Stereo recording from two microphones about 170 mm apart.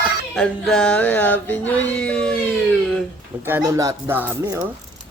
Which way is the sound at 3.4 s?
10° right (ahead or behind).